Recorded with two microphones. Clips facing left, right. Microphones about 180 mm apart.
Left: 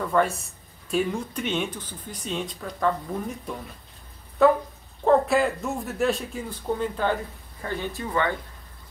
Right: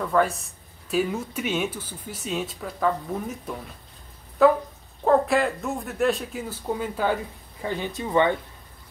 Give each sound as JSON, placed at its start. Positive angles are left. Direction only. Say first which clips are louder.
{"t": 0.0, "sound": "speech", "louder": "right 1 dB", "side_deg": 0}